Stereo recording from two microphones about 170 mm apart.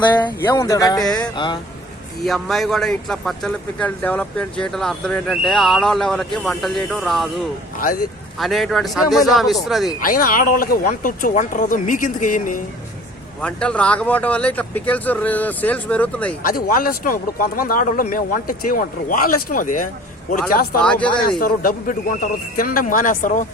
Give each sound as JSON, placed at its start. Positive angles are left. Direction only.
{"t": 0.3, "sound": "speech", "side_deg": 15}
{"t": 2.2, "sound": "speech", "side_deg": 0}
{"t": 10.0, "sound": "speech", "side_deg": 55}
{"t": 13.4, "sound": "speech", "side_deg": 5}
{"t": 16.4, "sound": "speech", "side_deg": 55}
{"t": 20.8, "sound": "speech", "side_deg": 5}
{"t": 21.3, "sound": "speech", "side_deg": 55}